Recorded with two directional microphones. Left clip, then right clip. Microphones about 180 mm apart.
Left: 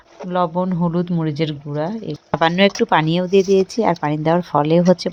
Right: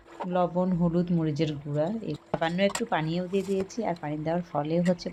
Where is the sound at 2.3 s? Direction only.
40° left (ahead or behind).